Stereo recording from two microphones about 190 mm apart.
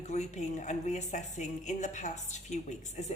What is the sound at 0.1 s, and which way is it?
Speech, 40° left (ahead or behind).